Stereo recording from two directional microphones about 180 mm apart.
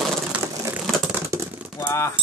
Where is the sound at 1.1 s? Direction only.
15° right (ahead or behind).